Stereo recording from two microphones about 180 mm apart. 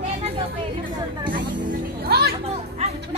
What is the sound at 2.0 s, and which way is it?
Music, 60° right (ahead or behind).